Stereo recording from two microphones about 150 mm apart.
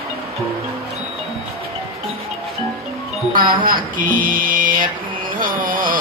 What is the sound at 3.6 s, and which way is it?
Speech, 70° right (ahead or behind).